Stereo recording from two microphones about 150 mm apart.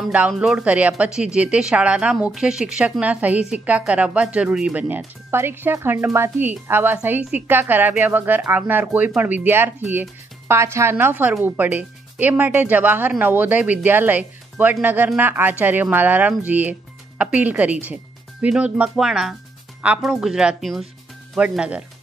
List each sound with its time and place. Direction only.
0.3 s speech: 5° right (ahead or behind)